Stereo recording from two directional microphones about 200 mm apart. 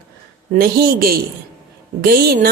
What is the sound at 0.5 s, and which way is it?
Speech, 50° right (ahead or behind).